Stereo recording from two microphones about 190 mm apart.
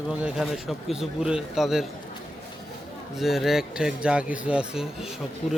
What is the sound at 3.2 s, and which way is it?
Speech, centre (ahead or behind).